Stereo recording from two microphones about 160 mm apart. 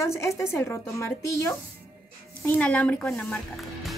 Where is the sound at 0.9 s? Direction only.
20° left (ahead or behind).